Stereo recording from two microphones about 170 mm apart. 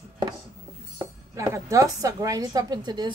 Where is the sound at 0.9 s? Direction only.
15° right (ahead or behind).